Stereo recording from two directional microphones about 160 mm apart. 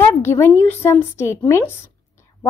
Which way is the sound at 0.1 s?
15° left (ahead or behind).